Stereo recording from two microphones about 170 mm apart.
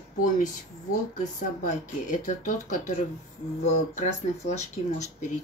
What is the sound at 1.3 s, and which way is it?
Speech, 50° left (ahead or behind).